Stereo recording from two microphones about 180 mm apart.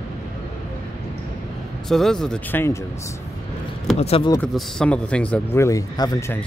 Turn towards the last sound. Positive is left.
turn(degrees=20)  # may be behind; listen again after turning